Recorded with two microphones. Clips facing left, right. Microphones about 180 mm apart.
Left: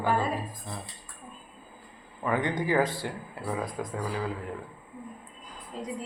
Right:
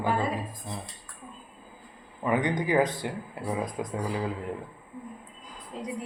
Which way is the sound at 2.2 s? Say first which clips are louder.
Right 2 dB; 20° right (ahead or behind).